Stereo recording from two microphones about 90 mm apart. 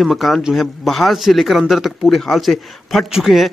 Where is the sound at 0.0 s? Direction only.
Centre (ahead or behind).